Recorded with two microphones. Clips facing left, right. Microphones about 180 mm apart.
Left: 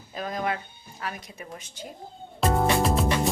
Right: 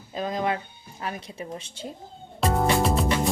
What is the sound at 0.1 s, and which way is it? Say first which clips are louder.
Speech: right 3 dB; 20° right (ahead or behind).